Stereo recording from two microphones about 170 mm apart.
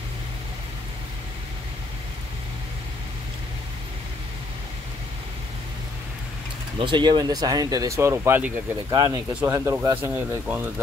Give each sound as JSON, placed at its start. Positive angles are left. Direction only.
{"t": 6.8, "sound": "speech", "side_deg": -30}
{"t": 8.9, "sound": "speech", "side_deg": -25}